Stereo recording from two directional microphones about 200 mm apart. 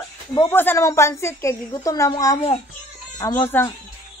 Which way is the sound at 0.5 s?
10° left (ahead or behind).